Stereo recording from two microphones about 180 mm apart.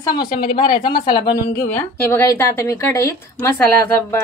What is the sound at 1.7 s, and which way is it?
A woman's voice, 10° left (ahead or behind).